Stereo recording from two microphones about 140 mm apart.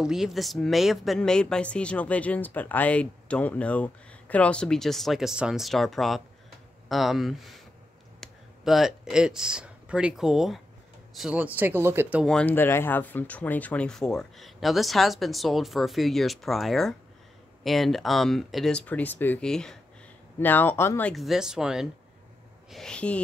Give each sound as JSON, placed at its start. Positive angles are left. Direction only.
{"t": 0.0, "sound": "speech", "side_deg": -5}
{"t": 12.2, "sound": "speech", "side_deg": 5}
{"t": 20.3, "sound": "speech", "side_deg": 15}
{"t": 21.1, "sound": "speech", "side_deg": 0}